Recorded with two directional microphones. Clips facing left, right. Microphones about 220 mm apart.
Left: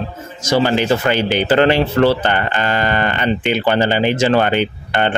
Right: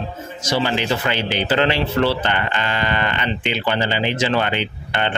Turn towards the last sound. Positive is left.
turn(degrees=45)  # may be behind; listen again after turning